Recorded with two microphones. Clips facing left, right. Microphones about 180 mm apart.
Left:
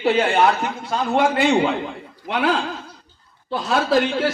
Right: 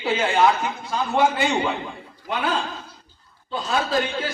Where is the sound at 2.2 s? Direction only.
75° left (ahead or behind).